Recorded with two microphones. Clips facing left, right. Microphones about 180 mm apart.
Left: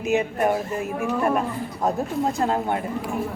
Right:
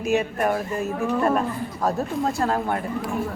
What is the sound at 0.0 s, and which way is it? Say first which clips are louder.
Speech: left 1 dB; 20° left (ahead or behind).